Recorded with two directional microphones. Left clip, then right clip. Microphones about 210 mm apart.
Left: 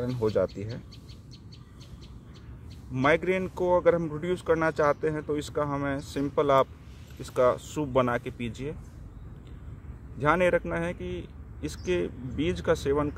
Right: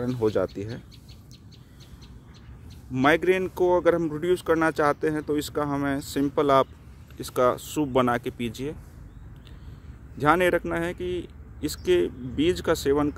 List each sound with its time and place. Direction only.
0.0 s speech: 45° right (ahead or behind)
2.9 s speech: 45° right (ahead or behind)
10.1 s speech: 45° right (ahead or behind)